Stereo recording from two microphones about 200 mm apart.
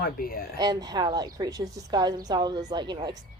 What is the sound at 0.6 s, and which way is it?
A woman's voice, 20° right (ahead or behind).